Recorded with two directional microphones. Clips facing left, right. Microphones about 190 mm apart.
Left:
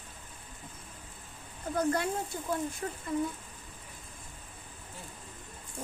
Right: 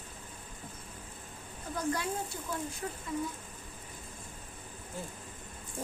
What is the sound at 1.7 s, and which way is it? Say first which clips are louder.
Speech: left 4 dB; 55° left (ahead or behind).